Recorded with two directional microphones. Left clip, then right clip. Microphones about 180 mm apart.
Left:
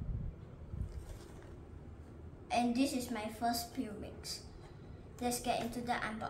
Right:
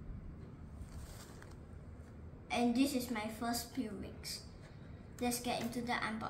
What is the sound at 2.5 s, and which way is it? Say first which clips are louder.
Speech: left 1 dB; 15° left (ahead or behind).